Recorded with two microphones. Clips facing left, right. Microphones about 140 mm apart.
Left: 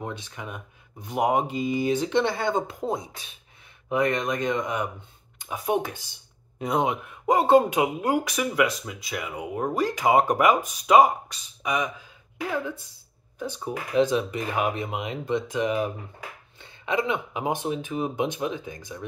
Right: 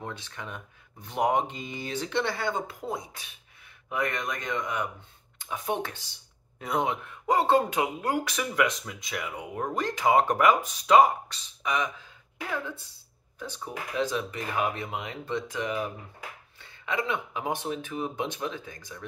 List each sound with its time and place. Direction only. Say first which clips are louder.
0.0 s speech: left 4 dB; 15° left (ahead or behind)
13.4 s speech: left 6 dB; 15° left (ahead or behind)